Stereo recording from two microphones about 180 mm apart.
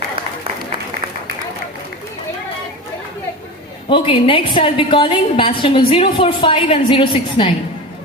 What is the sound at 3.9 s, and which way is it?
Speech, 30° left (ahead or behind).